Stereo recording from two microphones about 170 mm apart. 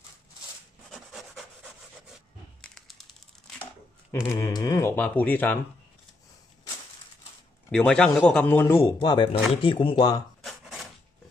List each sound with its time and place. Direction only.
0.9 s rub: centre (ahead or behind)
2.6 s a sound: 5° left (ahead or behind)
4.1 s speech: 15° left (ahead or behind)
7.7 s a man's voice: 5° left (ahead or behind)
8.8 s speech: 25° left (ahead or behind)
10.4 s a sound: centre (ahead or behind)